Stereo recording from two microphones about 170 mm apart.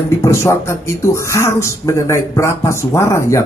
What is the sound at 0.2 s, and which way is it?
A man's voice, 15° left (ahead or behind).